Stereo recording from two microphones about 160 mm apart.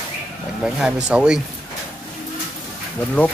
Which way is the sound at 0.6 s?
5° right (ahead or behind).